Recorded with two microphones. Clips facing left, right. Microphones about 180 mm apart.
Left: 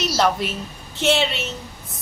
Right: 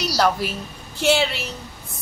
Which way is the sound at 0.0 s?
Centre (ahead or behind).